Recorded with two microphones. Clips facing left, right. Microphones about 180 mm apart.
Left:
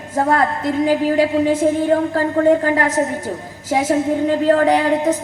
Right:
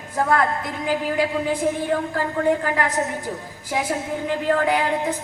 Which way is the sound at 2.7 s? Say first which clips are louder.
Left 5 dB; 45° left (ahead or behind).